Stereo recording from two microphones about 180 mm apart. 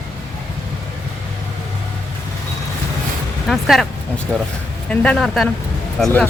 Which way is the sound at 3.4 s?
Centre (ahead or behind).